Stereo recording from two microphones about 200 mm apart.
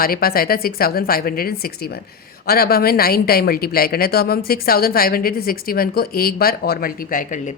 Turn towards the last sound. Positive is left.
turn(degrees=40)  # may be behind; listen again after turning